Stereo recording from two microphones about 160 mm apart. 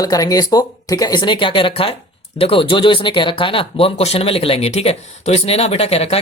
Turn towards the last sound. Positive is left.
turn(degrees=40)  # may be behind; listen again after turning